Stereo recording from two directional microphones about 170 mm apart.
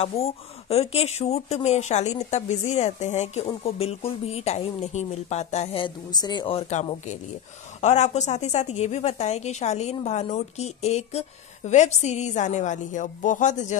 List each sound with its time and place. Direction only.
0.0 s speech: 35° left (ahead or behind)
7.8 s speech: 40° left (ahead or behind)